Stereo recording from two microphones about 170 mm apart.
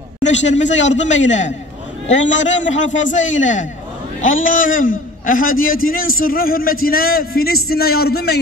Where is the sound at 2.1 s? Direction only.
90° left.